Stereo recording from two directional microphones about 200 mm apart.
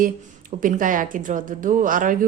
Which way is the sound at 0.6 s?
40° right (ahead or behind).